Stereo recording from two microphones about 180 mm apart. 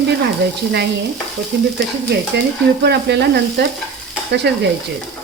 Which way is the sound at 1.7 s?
70° right (ahead or behind).